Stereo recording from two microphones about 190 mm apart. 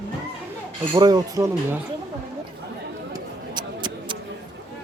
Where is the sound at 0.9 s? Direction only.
20° right (ahead or behind).